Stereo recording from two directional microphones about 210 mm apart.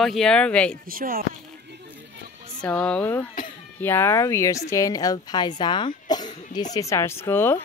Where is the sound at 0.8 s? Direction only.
45° right (ahead or behind).